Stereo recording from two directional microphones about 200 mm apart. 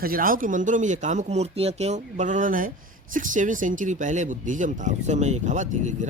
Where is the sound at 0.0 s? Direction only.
45° right (ahead or behind).